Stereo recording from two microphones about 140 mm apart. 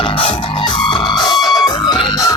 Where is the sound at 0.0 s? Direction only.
40° left (ahead or behind).